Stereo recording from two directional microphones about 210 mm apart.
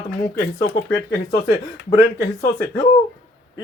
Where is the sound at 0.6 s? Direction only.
50° left (ahead or behind).